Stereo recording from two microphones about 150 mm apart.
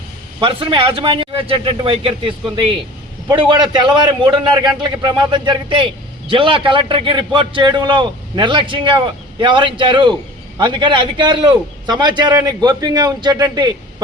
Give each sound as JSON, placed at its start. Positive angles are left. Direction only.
{"t": 0.3, "sound": "a man's voice", "side_deg": -35}